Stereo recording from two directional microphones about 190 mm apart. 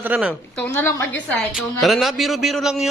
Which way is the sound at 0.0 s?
10° right (ahead or behind).